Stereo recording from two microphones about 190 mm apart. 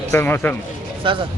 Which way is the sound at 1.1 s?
25° right (ahead or behind).